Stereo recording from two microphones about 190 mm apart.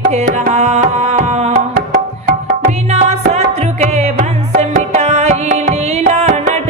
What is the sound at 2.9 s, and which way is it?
Music, 35° right (ahead or behind).